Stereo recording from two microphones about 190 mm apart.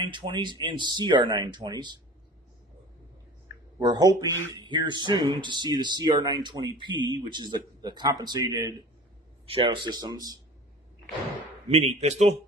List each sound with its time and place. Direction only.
0.0 s speech: 25° right (ahead or behind)
3.8 s speech: 20° right (ahead or behind)
11.7 s a man's voice: 35° right (ahead or behind)